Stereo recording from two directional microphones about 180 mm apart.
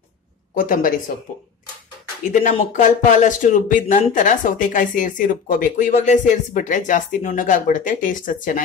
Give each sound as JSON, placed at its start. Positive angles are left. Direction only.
{"t": 0.6, "sound": "a woman's voice", "side_deg": 50}
{"t": 2.7, "sound": "a woman's voice", "side_deg": 45}